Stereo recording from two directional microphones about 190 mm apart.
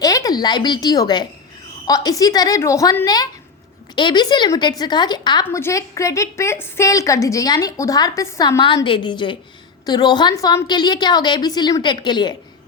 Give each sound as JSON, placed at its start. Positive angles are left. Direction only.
{"t": 0.0, "sound": "a woman's voice", "side_deg": 20}